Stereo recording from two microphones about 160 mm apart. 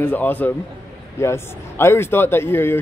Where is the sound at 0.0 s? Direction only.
10° left (ahead or behind).